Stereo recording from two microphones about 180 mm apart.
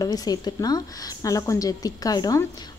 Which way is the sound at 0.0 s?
20° left (ahead or behind).